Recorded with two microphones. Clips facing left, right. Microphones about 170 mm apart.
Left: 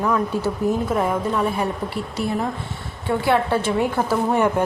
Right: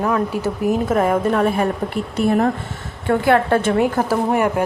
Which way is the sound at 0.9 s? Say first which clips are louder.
Right 4 dB; 50° right (ahead or behind).